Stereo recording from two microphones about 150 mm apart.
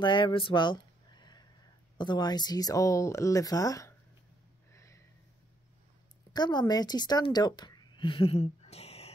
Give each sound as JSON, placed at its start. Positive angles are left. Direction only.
{"t": 0.0, "sound": "a sound", "side_deg": 35}
{"t": 2.0, "sound": "speech", "side_deg": 30}
{"t": 4.7, "sound": "snort", "side_deg": 20}
{"t": 6.3, "sound": "speech", "side_deg": 30}